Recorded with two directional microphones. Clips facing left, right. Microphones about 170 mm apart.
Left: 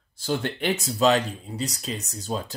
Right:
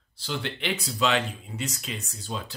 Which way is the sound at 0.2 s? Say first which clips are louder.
Left 5 dB; 45° left (ahead or behind).